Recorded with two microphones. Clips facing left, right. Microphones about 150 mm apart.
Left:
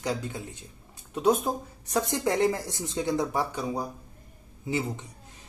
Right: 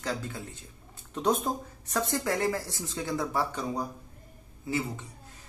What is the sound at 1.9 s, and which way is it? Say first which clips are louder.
Speech: left 3 dB; 20° left (ahead or behind).